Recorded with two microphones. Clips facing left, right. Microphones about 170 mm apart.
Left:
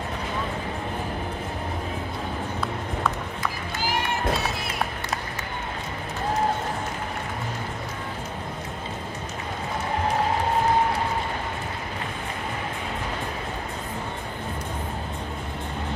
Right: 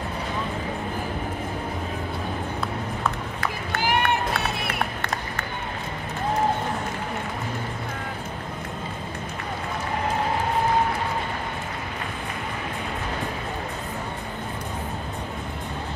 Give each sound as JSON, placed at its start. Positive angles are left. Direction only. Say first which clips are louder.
{"t": 3.3, "sound": "run", "louder": "right 2 dB", "side_deg": -60}